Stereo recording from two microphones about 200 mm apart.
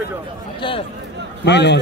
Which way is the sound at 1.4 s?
60° left (ahead or behind).